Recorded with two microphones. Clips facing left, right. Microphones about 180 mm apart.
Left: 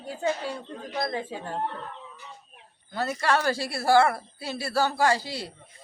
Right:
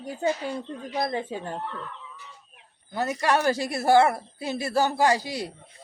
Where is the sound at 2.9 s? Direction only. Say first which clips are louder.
Right 1 dB; 15° right (ahead or behind).